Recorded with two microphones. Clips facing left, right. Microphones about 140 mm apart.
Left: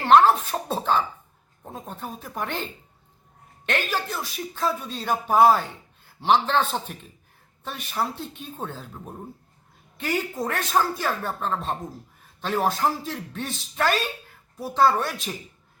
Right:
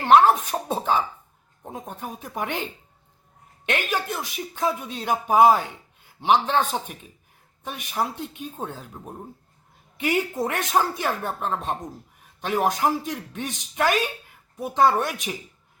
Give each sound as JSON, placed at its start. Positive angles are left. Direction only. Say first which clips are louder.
{"t": 0.0, "sound": "speech", "louder": "even", "side_deg": -10}
{"t": 3.7, "sound": "speech", "louder": "right 1 dB", "side_deg": -15}